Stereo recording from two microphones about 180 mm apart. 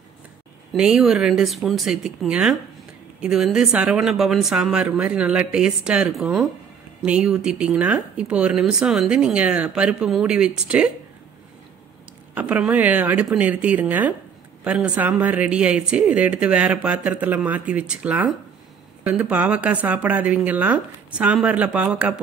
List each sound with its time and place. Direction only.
0.7 s speech: 5° right (ahead or behind)
12.4 s speech: 5° right (ahead or behind)